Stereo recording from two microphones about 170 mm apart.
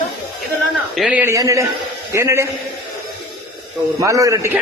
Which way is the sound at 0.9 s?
5° right (ahead or behind).